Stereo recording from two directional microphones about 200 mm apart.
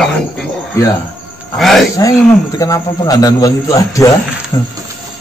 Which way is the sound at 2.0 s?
15° left (ahead or behind).